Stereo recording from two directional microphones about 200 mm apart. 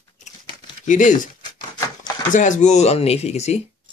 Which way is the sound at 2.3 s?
40° left (ahead or behind).